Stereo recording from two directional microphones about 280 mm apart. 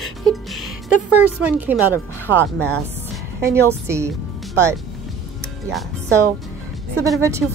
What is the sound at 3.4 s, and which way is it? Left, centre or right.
Speech, centre.